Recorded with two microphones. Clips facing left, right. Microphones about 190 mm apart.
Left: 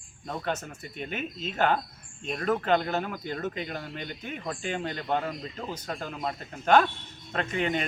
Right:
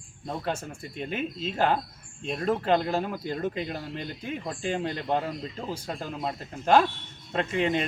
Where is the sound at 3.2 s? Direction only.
30° right (ahead or behind).